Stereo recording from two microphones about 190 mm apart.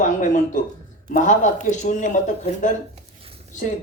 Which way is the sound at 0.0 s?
40° left (ahead or behind).